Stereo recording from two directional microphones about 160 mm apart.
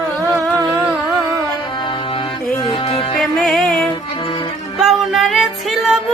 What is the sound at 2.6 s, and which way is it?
Music, 35° left (ahead or behind).